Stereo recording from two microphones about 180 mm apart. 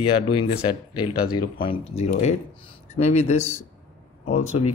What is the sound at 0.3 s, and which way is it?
Speech, 30° left (ahead or behind).